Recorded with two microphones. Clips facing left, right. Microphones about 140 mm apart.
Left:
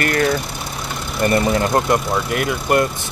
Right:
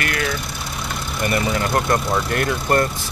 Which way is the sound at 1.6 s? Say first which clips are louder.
Left 3 dB; 20° left (ahead or behind).